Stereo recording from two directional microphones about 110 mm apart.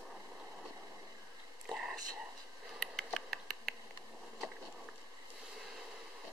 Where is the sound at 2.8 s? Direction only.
5° left (ahead or behind).